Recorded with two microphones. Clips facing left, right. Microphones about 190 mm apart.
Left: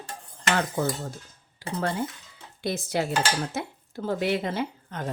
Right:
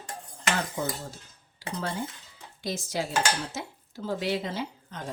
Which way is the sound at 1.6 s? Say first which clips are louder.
Left 3 dB; 55° left (ahead or behind).